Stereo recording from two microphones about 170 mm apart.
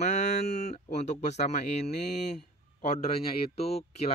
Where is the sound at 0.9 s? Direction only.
45° left (ahead or behind).